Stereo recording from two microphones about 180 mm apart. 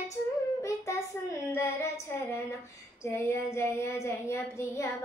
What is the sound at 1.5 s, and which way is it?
Female singing, 15° left (ahead or behind).